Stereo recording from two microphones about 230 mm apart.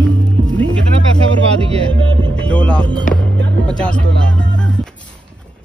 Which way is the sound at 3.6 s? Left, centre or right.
Centre.